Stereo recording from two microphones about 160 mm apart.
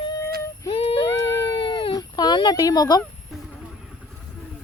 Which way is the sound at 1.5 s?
30° left (ahead or behind).